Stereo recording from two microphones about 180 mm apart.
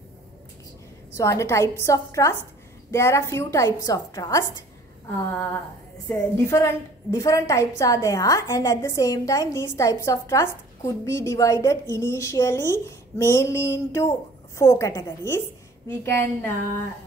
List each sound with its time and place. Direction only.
1.1 s a woman's voice: 15° left (ahead or behind)
6.0 s a woman's voice: 15° left (ahead or behind)